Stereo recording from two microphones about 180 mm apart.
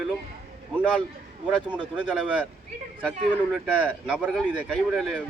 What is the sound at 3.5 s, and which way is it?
Speech, 5° right (ahead or behind).